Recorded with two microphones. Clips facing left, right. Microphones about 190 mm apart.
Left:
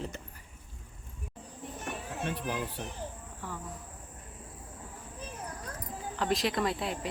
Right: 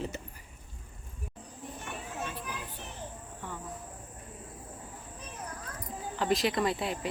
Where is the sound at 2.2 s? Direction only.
65° left (ahead or behind).